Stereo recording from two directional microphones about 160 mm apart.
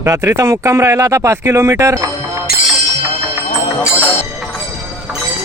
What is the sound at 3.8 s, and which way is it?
Music, 10° left (ahead or behind).